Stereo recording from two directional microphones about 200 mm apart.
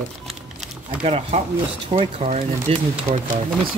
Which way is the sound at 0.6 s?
35° right (ahead or behind).